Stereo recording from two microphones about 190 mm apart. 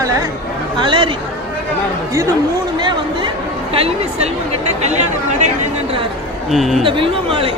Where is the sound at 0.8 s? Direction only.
25° right (ahead or behind).